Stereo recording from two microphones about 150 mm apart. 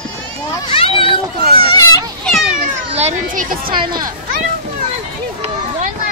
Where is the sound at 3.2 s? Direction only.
70° right (ahead or behind).